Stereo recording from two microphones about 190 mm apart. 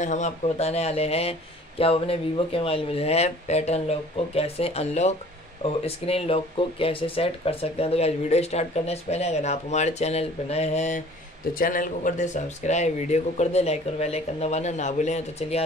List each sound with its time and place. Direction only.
0.0 s speech: 40° left (ahead or behind)
11.5 s speech: 45° left (ahead or behind)